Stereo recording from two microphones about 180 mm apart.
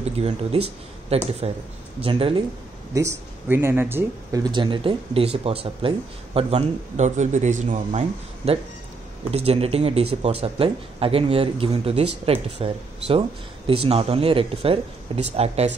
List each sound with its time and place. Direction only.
0.0 s speech: 35° right (ahead or behind)
2.9 s speech: 15° right (ahead or behind); by 15.7 s 35° right (ahead or behind)